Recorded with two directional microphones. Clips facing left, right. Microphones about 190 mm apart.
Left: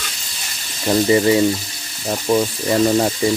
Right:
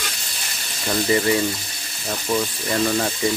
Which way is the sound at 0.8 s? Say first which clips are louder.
Left 6 dB; 25° left (ahead or behind).